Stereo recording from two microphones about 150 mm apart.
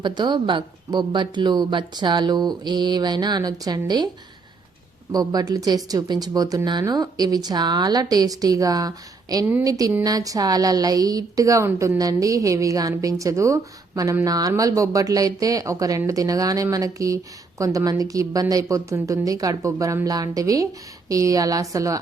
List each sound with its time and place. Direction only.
0.0 s a woman's voice: 30° right (ahead or behind)
5.1 s a woman's voice: 25° right (ahead or behind)